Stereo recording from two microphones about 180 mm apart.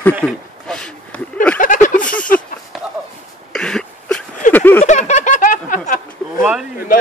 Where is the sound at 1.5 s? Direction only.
45° left (ahead or behind).